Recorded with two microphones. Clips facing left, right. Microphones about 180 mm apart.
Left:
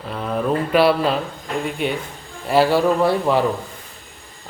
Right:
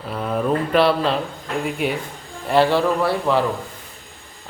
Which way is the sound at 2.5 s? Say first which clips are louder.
Left 1 dB; 5° left (ahead or behind).